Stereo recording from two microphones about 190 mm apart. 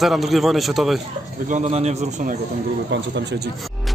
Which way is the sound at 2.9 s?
65° right (ahead or behind).